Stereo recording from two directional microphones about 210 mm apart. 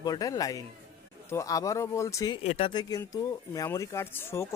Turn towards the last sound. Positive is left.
turn(degrees=10)  # may be behind; listen again after turning